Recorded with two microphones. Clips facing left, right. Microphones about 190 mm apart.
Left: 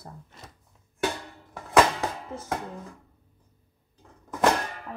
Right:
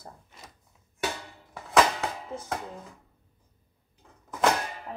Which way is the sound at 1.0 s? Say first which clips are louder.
Left 3 dB; 5° right (ahead or behind).